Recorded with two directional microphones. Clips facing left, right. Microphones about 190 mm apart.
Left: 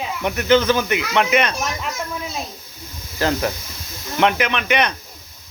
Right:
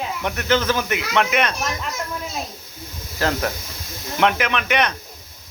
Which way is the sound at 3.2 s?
Centre (ahead or behind).